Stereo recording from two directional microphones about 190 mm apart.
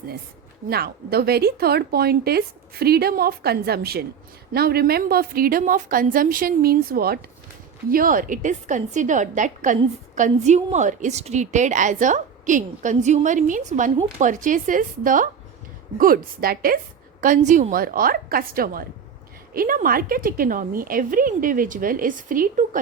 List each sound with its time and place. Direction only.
0.7 s a woman's voice: 55° right (ahead or behind)